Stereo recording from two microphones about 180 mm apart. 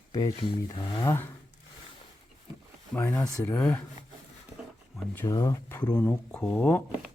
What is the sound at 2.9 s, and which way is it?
Speech, 15° left (ahead or behind).